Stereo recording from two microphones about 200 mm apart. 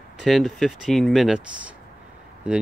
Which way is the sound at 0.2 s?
Centre (ahead or behind).